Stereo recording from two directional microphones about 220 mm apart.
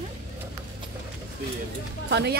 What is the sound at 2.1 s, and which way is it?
Speech, 50° right (ahead or behind).